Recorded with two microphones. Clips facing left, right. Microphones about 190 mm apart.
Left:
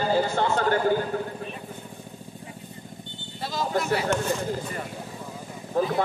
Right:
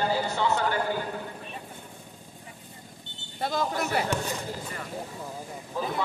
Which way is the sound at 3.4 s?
55° right (ahead or behind).